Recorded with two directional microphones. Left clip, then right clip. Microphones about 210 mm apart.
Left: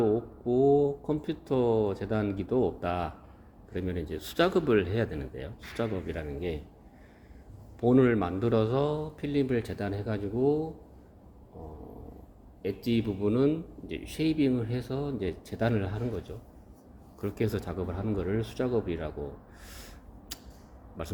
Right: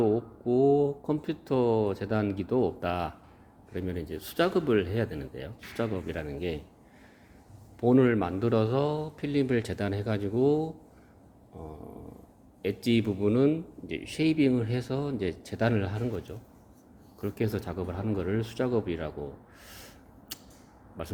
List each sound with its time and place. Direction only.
0.0 s speech: 20° right (ahead or behind)
7.8 s speech: 15° right (ahead or behind); by 10.7 s 40° right (ahead or behind)
12.6 s speech: 35° right (ahead or behind); by 19.1 s 20° right (ahead or behind)
19.6 s a sound: 15° right (ahead or behind)
21.0 s speech: 10° right (ahead or behind)